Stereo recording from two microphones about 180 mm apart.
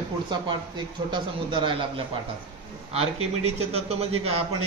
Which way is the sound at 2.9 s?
35° right (ahead or behind).